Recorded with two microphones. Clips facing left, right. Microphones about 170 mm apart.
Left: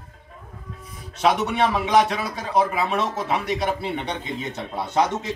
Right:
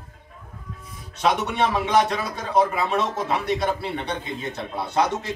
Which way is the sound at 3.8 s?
20° left (ahead or behind).